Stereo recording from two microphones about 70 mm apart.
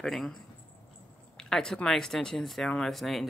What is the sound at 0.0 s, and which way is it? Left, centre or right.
Speech, centre.